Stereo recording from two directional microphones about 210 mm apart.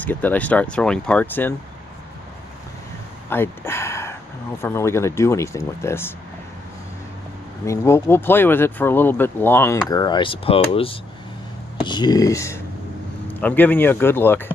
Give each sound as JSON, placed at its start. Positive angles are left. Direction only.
{"t": 0.0, "sound": "speech", "side_deg": 10}
{"t": 3.3, "sound": "speech", "side_deg": 10}
{"t": 7.6, "sound": "speech", "side_deg": 15}